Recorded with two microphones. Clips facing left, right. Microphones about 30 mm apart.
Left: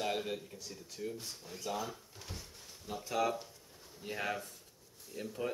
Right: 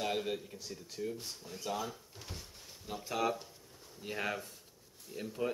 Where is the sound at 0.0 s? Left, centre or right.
Centre.